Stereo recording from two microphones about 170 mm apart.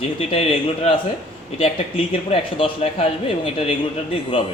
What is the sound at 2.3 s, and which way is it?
Speech, 35° left (ahead or behind).